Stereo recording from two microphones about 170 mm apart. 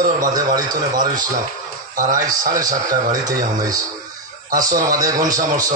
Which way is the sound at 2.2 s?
20° right (ahead or behind).